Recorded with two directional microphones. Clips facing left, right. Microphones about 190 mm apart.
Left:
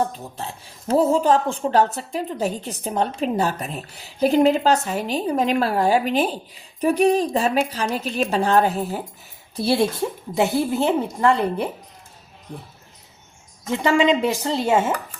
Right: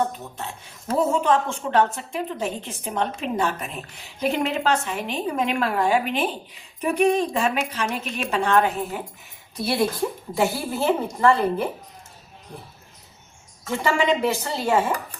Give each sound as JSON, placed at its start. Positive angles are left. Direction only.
{"t": 0.3, "sound": "a woman's voice", "side_deg": 30}
{"t": 13.7, "sound": "a woman's voice", "side_deg": 15}